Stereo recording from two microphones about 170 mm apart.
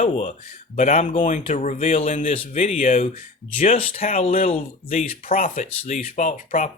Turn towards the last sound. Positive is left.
turn(degrees=50)  # may be behind; listen again after turning